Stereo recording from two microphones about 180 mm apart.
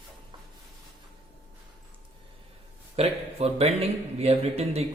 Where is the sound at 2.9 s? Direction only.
35° right (ahead or behind).